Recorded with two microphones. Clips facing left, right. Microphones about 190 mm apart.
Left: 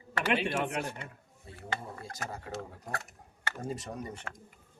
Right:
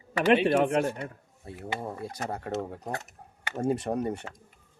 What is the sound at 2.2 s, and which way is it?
Speech, 65° right (ahead or behind).